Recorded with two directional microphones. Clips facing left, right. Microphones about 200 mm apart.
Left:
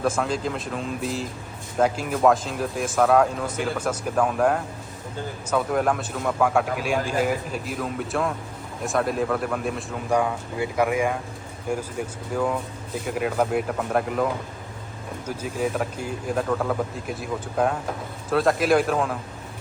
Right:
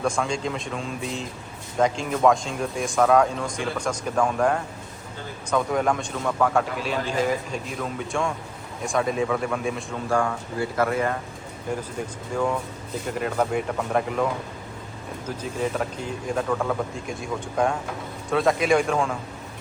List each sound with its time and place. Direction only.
0.0 s speech: 5° left (ahead or behind)
10.1 s speech: 15° left (ahead or behind); by 14.3 s centre (ahead or behind)
15.3 s speech: 10° left (ahead or behind)